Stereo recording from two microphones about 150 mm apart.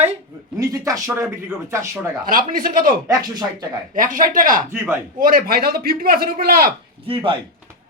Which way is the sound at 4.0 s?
65° right (ahead or behind).